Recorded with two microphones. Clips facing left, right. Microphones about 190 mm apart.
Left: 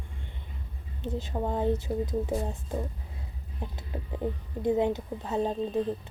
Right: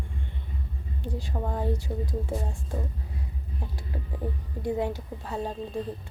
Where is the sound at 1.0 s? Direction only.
20° left (ahead or behind).